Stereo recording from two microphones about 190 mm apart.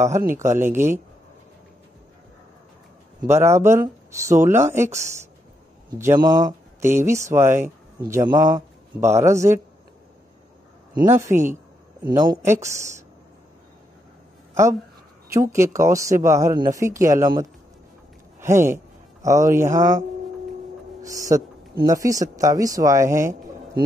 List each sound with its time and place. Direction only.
0.4 s speech: 15° right (ahead or behind)
3.3 s speech: 15° right (ahead or behind)
11.1 s speech: 15° right (ahead or behind)
15.3 s speech: 15° right (ahead or behind)
21.0 s speech: 15° right (ahead or behind)